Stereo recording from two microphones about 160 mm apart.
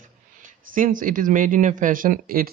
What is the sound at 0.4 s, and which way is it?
Speech, 60° right (ahead or behind).